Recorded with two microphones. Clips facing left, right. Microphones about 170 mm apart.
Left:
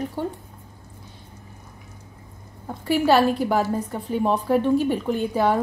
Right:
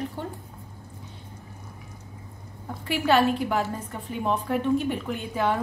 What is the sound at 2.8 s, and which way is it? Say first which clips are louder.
A woman's voice: left 4 dB; 35° left (ahead or behind).